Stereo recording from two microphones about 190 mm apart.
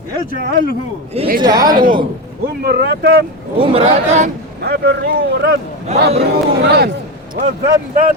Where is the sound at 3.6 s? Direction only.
30° right (ahead or behind).